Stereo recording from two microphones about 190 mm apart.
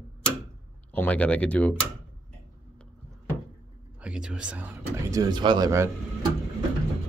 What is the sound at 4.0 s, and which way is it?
Speech, 5° right (ahead or behind).